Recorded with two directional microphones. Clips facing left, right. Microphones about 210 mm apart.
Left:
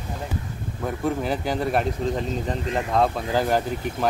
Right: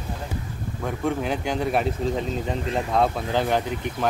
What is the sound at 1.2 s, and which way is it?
Speech, centre (ahead or behind).